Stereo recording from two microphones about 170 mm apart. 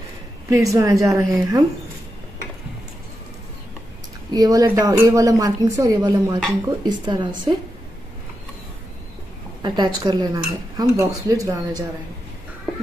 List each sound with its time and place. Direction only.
0.5 s speech: 20° right (ahead or behind)
4.3 s speech: 20° right (ahead or behind)
9.6 s speech: 25° right (ahead or behind)